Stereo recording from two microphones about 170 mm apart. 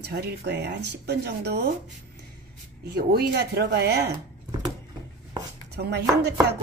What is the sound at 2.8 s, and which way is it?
Speech, 65° right (ahead or behind).